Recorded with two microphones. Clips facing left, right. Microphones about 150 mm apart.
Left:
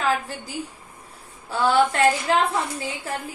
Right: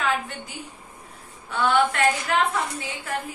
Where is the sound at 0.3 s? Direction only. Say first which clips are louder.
Left 5 dB; 35° left (ahead or behind).